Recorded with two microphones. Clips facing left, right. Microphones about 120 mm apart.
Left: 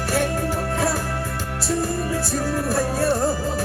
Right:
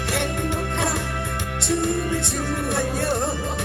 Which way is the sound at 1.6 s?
35° left (ahead or behind).